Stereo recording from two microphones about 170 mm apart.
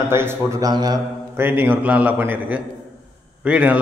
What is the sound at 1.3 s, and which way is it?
A man's voice, 10° right (ahead or behind).